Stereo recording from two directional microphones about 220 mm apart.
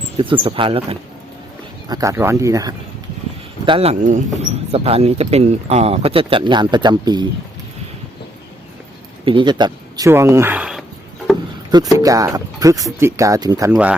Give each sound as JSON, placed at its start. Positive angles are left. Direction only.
{"t": 0.2, "sound": "speech", "side_deg": -25}
{"t": 3.7, "sound": "speech", "side_deg": -25}
{"t": 9.2, "sound": "speech", "side_deg": -20}
{"t": 11.9, "sound": "speech", "side_deg": -15}
{"t": 13.7, "sound": "speech", "side_deg": -5}